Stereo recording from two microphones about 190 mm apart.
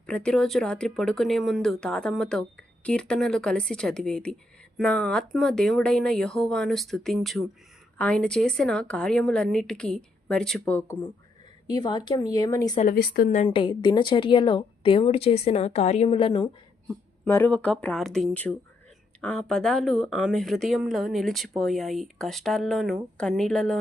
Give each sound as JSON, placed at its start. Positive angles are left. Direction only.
{"t": 0.1, "sound": "speech", "side_deg": 5}
{"t": 11.7, "sound": "speech", "side_deg": 20}
{"t": 12.9, "sound": "speech", "side_deg": 50}
{"t": 13.5, "sound": "speech", "side_deg": 25}
{"t": 17.2, "sound": "speech", "side_deg": 10}